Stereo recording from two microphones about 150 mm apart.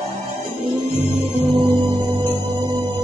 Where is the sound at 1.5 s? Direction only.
40° right (ahead or behind).